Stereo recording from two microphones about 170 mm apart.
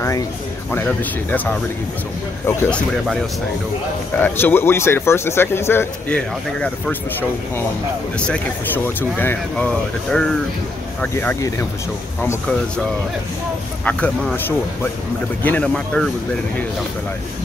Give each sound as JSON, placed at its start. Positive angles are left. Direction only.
{"t": 0.7, "sound": "a man's voice", "side_deg": 10}
{"t": 4.2, "sound": "a man's voice", "side_deg": 10}
{"t": 13.8, "sound": "a man's voice", "side_deg": 10}
{"t": 15.4, "sound": "speech", "side_deg": 5}